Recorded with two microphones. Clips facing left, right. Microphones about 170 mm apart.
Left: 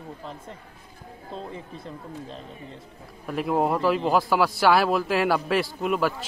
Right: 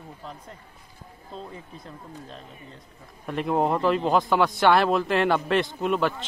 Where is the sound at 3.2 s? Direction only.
5° left (ahead or behind).